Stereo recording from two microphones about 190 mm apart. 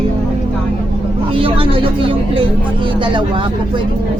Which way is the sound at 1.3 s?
30° right (ahead or behind).